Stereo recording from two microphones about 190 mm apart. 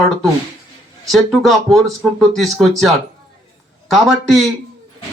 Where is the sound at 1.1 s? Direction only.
Centre (ahead or behind).